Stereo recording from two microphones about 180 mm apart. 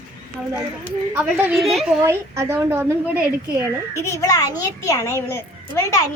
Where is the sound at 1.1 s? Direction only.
10° right (ahead or behind).